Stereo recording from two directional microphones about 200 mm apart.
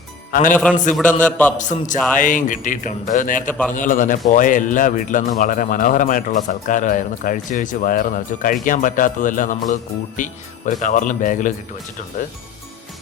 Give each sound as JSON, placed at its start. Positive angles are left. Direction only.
{"t": 0.3, "sound": "speech", "side_deg": 40}
{"t": 0.9, "sound": "a man's voice", "side_deg": 5}
{"t": 1.5, "sound": "speech", "side_deg": 40}